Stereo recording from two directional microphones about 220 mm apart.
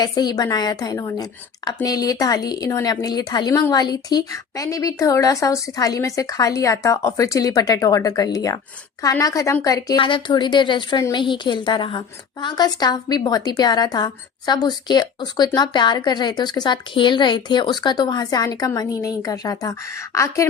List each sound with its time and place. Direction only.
0.0 s a woman's voice: 20° left (ahead or behind)